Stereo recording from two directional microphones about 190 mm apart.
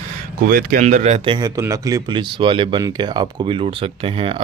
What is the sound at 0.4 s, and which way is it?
Speech, 50° right (ahead or behind).